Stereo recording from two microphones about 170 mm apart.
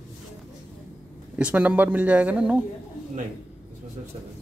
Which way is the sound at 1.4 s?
10° right (ahead or behind).